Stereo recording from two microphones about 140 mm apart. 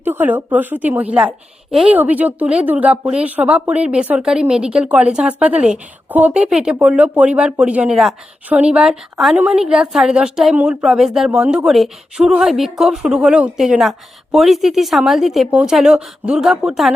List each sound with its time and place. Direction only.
0.0 s a woman's voice: 15° right (ahead or behind)